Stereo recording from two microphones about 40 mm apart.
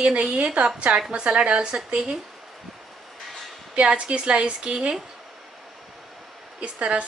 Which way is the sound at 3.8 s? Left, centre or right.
Right.